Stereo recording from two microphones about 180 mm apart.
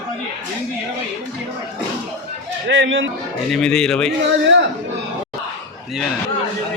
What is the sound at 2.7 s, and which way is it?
Speech, 90° right.